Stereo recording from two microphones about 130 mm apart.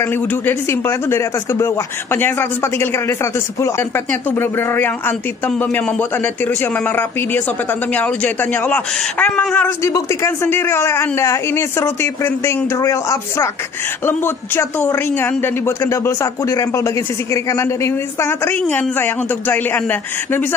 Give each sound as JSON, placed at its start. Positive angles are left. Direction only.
{"t": 0.0, "sound": "speech", "side_deg": 15}
{"t": 9.8, "sound": "speech", "side_deg": 25}